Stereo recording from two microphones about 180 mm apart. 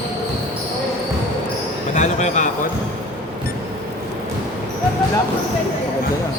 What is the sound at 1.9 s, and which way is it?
Speech, 45° left (ahead or behind).